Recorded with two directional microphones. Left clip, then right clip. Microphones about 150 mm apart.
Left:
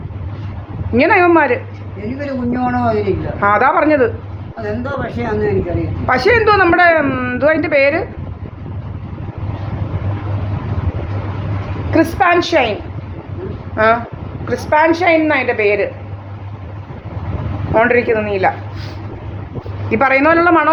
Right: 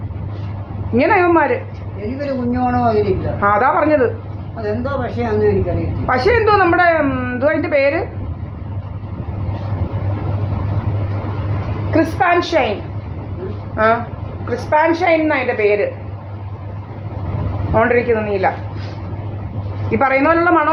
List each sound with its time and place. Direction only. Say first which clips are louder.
0.9 s a woman's voice: left 2 dB; 30° left (ahead or behind)
2.1 s a man's voice: even; 5° right (ahead or behind)
3.4 s a woman's voice: left 2 dB; 30° left (ahead or behind)
4.6 s a man's voice: even; centre (ahead or behind)
6.1 s a woman's voice: left 2 dB; 30° left (ahead or behind)
11.9 s a woman's voice: left 2 dB; 45° left (ahead or behind)
13.7 s a woman's voice: left 2 dB; 35° left (ahead or behind)
17.7 s a woman's voice: left 2 dB; 30° left (ahead or behind)
19.9 s a woman's voice: left 2 dB; 35° left (ahead or behind)